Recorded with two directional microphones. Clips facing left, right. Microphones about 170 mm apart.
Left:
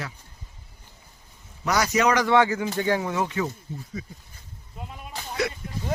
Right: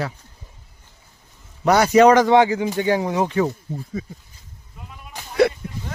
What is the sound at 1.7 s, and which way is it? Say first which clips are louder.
Speech: right 9 dB; 30° right (ahead or behind).